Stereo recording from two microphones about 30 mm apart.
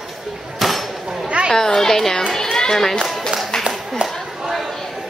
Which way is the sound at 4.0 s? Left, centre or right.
Right.